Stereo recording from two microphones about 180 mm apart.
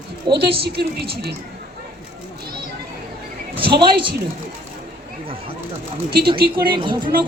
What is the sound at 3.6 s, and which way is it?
Speech, 60° right (ahead or behind).